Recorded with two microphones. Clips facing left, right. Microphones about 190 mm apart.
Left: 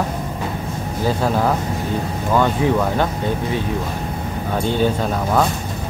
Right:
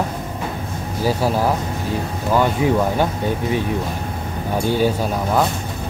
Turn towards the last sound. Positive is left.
turn(degrees=-10)  # may be behind; listen again after turning